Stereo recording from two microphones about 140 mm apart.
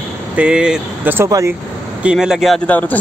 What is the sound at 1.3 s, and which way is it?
Speech, 25° right (ahead or behind).